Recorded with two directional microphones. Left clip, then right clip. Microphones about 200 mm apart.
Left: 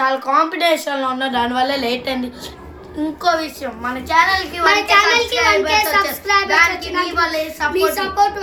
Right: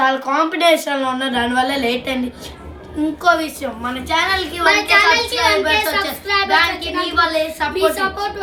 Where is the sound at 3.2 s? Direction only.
10° right (ahead or behind).